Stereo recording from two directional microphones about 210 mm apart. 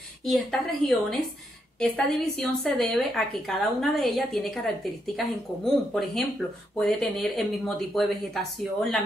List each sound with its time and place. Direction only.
0.2 s a woman's voice: centre (ahead or behind)